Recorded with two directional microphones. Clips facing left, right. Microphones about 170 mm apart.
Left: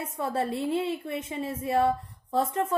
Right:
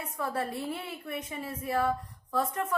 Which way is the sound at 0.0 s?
25° left (ahead or behind).